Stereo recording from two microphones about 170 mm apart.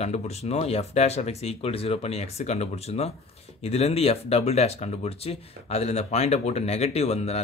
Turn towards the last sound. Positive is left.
turn(degrees=40)  # may be behind; listen again after turning